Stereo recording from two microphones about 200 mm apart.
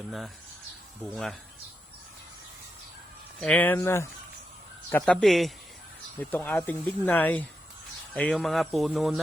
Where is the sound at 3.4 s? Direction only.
5° left (ahead or behind).